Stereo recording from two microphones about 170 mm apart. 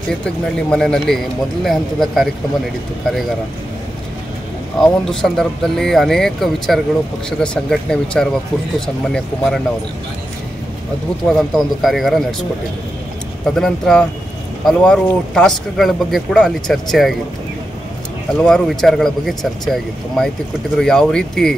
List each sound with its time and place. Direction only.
0.2 s speech: 5° left (ahead or behind)
4.8 s speech: centre (ahead or behind)
11.2 s speech: 5° left (ahead or behind)
13.6 s speech: 5° left (ahead or behind)
18.4 s speech: centre (ahead or behind)